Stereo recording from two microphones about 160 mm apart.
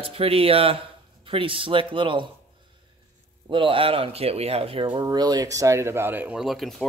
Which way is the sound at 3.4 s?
30° right (ahead or behind).